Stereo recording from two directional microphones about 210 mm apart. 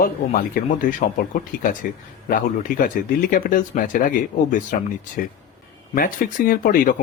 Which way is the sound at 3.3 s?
40° left (ahead or behind).